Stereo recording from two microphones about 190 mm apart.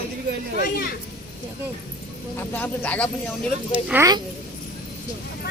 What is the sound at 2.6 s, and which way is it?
Speech, 10° left (ahead or behind).